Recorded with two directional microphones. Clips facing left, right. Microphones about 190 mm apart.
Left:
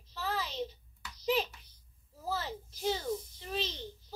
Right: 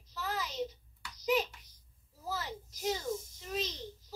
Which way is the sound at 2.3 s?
30° left (ahead or behind).